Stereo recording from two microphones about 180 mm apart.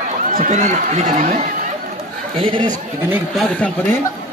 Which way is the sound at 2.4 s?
25° right (ahead or behind).